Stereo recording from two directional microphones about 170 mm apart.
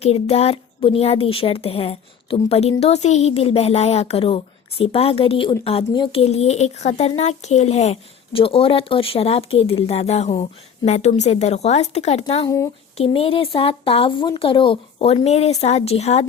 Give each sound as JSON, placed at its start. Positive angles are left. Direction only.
{"t": 0.0, "sound": "a woman's voice", "side_deg": 40}
{"t": 12.5, "sound": "speech", "side_deg": 15}
{"t": 13.0, "sound": "a woman's voice", "side_deg": 35}